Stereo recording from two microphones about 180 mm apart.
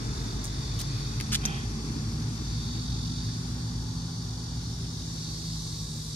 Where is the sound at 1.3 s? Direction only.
10° left (ahead or behind).